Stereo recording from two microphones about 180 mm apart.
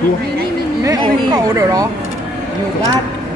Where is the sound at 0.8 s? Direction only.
15° right (ahead or behind).